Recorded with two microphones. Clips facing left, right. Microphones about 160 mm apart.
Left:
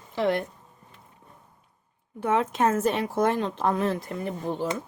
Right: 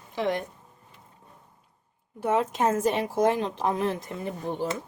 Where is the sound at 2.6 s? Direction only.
10° right (ahead or behind).